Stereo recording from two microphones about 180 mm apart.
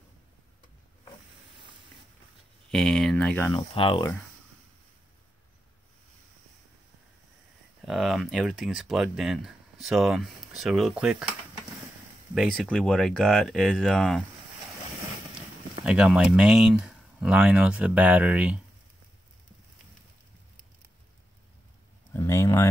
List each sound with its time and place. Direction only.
2.7 s speech: centre (ahead or behind)
3.5 s speech: 30° left (ahead or behind)
7.8 s speech: centre (ahead or behind)
12.4 s speech: centre (ahead or behind)
15.3 s speech: 5° right (ahead or behind)
22.1 s a sound: 15° left (ahead or behind)